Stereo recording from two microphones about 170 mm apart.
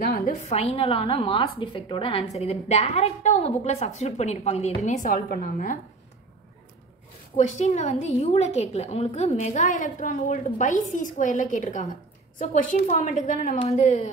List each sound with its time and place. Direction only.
0.3 s a woman's voice: 40° left (ahead or behind)
7.3 s a woman's voice: 45° left (ahead or behind)